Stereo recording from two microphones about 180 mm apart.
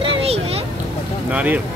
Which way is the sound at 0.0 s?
35° right (ahead or behind).